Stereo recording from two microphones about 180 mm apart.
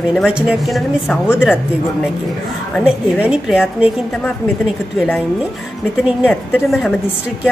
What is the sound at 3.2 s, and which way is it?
Speech, 5° right (ahead or behind).